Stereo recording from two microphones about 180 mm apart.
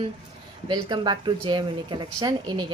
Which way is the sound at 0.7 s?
25° right (ahead or behind).